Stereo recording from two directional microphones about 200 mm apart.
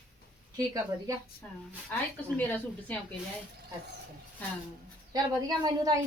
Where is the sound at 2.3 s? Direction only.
10° left (ahead or behind).